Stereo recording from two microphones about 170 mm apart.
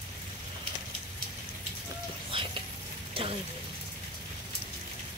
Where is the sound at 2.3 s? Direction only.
30° right (ahead or behind).